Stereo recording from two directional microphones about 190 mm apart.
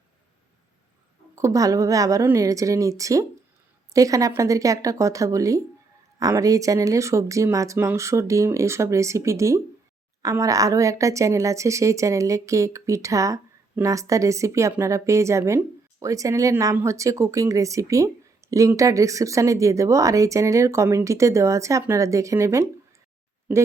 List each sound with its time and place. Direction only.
1.4 s a woman's voice: 15° right (ahead or behind)